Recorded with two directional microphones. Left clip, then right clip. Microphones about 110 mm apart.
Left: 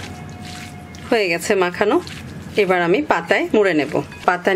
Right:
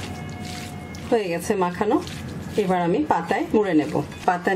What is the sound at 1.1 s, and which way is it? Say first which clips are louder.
A woman's voice: left 5 dB; 50° left (ahead or behind).